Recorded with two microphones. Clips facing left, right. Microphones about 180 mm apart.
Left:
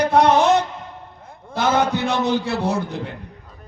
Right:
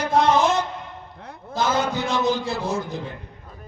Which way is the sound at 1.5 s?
65° left (ahead or behind).